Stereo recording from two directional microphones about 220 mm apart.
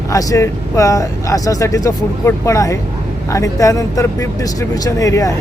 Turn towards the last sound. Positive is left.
turn(degrees=15)  # may be behind; listen again after turning